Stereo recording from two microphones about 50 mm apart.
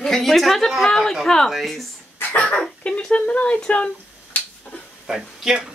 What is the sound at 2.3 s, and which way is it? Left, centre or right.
Speech, left.